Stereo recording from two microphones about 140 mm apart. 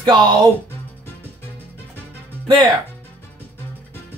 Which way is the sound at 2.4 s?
35° right (ahead or behind).